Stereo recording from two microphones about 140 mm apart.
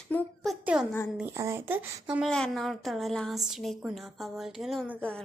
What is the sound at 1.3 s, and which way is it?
Speech, 20° right (ahead or behind).